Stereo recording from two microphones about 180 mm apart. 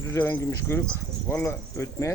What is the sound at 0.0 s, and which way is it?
Speech, 15° left (ahead or behind).